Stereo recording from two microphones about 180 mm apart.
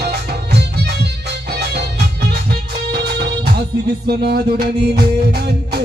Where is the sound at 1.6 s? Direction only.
65° right (ahead or behind).